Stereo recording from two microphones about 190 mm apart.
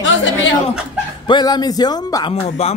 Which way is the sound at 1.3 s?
25° left (ahead or behind).